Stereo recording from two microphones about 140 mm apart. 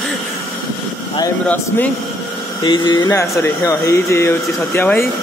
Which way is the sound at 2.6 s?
35° left (ahead or behind).